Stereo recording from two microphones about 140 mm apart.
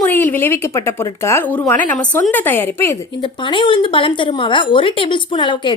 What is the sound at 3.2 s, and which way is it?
Speech, 35° left (ahead or behind).